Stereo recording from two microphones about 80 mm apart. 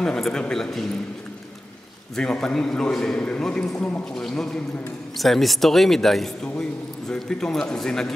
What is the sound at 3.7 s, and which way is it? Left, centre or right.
Speech, left.